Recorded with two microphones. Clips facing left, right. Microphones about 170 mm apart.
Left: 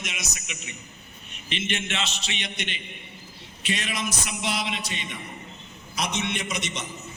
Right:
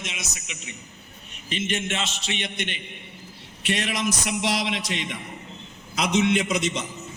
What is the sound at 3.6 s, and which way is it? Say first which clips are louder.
A man's voice: right 4 dB; 65° right (ahead or behind).